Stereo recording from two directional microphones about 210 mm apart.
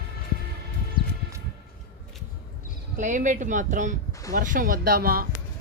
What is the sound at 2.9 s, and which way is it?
Speech, 35° right (ahead or behind).